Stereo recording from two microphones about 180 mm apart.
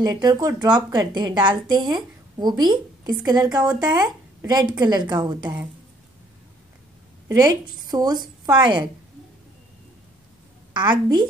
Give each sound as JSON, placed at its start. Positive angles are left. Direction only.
{"t": 0.0, "sound": "a woman's voice", "side_deg": -20}
{"t": 7.2, "sound": "a woman's voice", "side_deg": -20}
{"t": 10.7, "sound": "a woman's voice", "side_deg": -25}